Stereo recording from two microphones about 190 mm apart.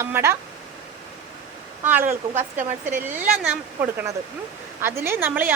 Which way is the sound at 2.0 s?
40° right (ahead or behind).